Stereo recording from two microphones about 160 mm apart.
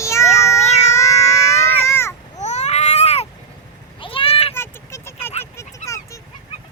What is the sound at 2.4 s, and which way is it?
Baby cry, 45° left (ahead or behind).